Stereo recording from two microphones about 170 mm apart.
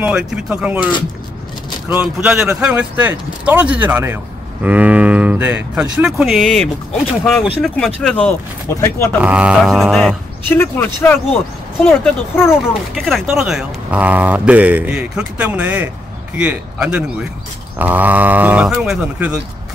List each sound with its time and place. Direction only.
0.0 s speech: 5° right (ahead or behind)
8.8 s speech: 15° left (ahead or behind)
9.2 s speech: 5° right (ahead or behind)
10.5 s speech: 10° left (ahead or behind)
13.0 s speech: centre (ahead or behind)